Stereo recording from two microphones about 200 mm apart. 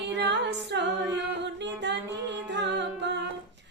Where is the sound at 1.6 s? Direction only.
60° right (ahead or behind).